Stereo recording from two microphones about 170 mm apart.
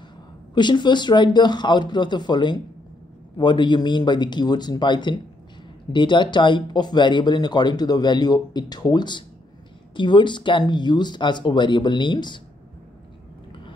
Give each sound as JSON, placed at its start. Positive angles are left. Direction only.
{"t": 0.6, "sound": "speech", "side_deg": 25}